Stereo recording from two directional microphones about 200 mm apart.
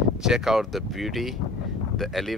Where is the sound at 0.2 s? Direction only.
Centre (ahead or behind).